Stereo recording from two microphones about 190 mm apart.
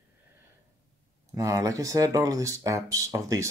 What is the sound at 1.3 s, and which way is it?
Speech, 15° right (ahead or behind).